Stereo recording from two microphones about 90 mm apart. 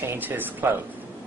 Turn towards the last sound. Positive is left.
turn(degrees=-20)  # may be behind; listen again after turning